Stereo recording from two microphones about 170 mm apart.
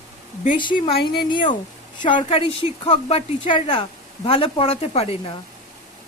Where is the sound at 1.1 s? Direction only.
30° left (ahead or behind).